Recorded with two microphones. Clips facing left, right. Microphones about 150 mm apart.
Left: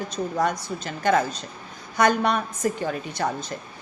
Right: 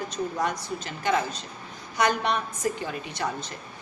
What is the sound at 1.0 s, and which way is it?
A woman's voice, 45° left (ahead or behind).